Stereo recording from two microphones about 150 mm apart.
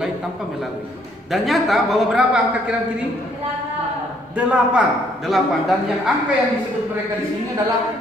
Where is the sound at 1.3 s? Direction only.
Centre (ahead or behind).